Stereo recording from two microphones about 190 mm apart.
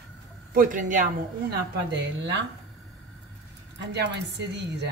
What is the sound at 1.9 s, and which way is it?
Speech, 65° right (ahead or behind).